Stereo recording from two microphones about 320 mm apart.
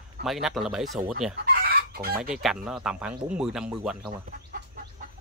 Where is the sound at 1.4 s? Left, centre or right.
Right.